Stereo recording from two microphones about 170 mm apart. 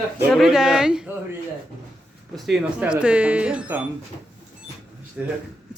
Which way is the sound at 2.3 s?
Centre (ahead or behind).